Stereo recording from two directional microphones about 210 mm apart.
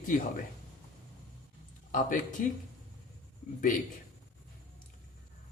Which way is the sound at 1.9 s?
40° left (ahead or behind).